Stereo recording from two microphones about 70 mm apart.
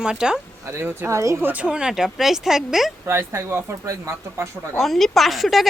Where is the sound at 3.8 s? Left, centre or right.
Right.